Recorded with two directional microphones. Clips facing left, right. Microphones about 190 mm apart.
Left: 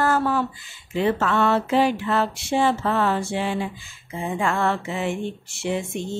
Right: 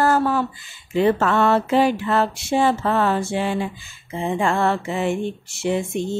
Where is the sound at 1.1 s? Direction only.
45° right (ahead or behind).